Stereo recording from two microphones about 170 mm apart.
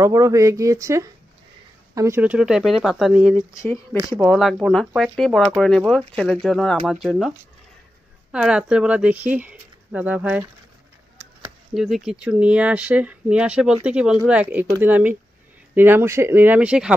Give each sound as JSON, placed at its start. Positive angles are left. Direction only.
{"t": 0.0, "sound": "speech", "side_deg": -20}
{"t": 11.7, "sound": "speech", "side_deg": 0}